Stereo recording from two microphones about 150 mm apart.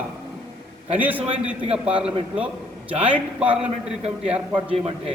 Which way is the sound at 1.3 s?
40° right (ahead or behind).